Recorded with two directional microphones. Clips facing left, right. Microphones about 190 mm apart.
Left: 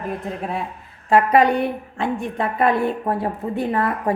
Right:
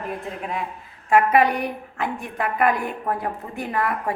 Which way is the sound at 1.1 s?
30° left (ahead or behind).